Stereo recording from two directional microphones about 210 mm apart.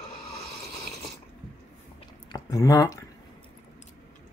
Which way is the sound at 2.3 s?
15° left (ahead or behind).